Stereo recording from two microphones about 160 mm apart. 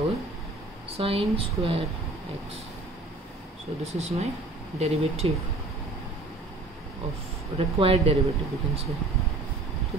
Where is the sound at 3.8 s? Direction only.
45° right (ahead or behind).